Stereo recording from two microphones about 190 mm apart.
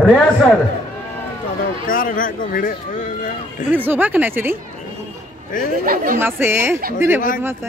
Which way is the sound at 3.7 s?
10° right (ahead or behind).